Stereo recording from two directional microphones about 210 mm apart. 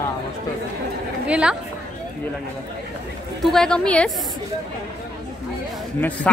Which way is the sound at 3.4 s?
Centre (ahead or behind).